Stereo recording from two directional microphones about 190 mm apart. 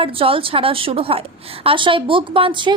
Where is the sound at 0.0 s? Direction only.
30° right (ahead or behind).